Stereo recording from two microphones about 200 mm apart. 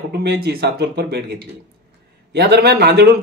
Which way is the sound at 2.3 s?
55° right (ahead or behind).